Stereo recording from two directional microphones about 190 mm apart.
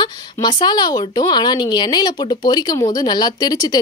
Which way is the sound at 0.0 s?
25° left (ahead or behind).